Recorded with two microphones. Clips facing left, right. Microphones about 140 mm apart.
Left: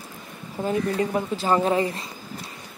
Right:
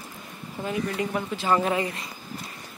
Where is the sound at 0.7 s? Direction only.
35° left (ahead or behind).